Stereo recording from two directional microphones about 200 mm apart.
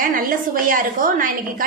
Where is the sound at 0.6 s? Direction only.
45° right (ahead or behind).